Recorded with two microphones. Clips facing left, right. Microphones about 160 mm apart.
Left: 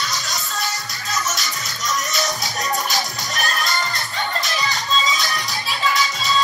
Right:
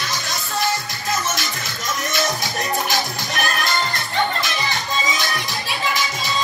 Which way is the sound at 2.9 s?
55° right (ahead or behind).